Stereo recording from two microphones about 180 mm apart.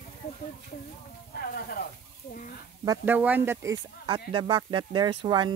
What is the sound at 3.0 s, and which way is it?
Speech, 10° right (ahead or behind).